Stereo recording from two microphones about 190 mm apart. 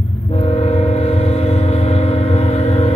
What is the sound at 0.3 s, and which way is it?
Train, 30° left (ahead or behind).